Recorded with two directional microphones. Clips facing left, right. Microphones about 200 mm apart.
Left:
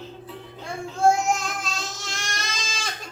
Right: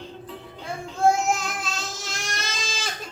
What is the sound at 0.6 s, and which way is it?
Child singing, centre (ahead or behind).